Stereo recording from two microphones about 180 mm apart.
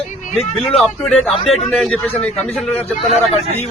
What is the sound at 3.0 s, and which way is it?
Speech, 35° left (ahead or behind).